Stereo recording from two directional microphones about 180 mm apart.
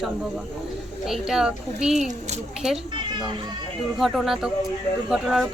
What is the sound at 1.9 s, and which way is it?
Speech, 40° right (ahead or behind).